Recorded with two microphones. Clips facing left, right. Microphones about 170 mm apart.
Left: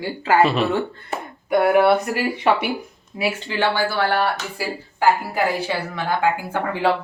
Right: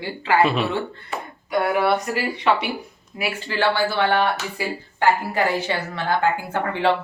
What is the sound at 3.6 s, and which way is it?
A woman's voice, 10° left (ahead or behind).